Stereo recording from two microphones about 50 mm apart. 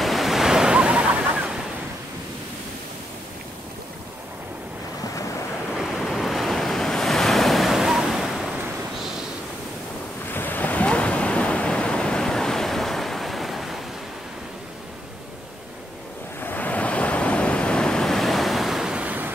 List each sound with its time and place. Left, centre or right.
0.0 s waves: centre; by 1.7 s right
5.7 s waves: centre
10.3 s waves: left
10.9 s waves: left; by 13.7 s centre
16.4 s waves: left; by 18.9 s centre